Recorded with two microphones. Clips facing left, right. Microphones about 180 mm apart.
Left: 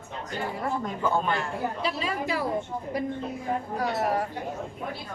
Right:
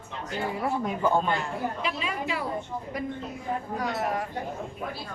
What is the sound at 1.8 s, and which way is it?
Speech, 35° left (ahead or behind).